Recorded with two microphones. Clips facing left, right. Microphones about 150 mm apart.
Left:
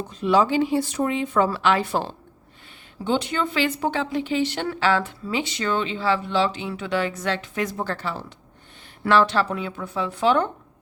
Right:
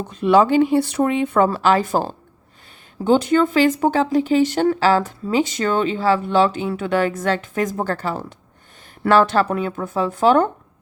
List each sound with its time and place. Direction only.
0.1 s speech: 60° right (ahead or behind); by 10.5 s 45° right (ahead or behind)